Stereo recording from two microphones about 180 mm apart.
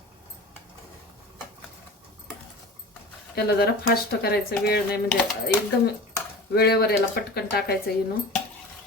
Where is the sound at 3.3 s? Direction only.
60° left (ahead or behind).